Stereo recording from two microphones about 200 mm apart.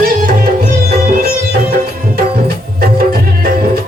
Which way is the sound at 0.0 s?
45° right (ahead or behind).